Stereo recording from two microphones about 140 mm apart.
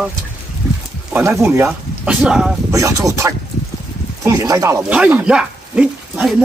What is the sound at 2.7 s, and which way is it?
Speech, 25° right (ahead or behind).